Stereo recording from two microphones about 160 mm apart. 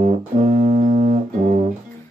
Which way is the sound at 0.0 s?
50° right (ahead or behind).